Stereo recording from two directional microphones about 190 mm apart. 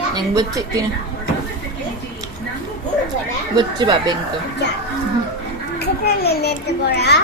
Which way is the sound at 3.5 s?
25° right (ahead or behind).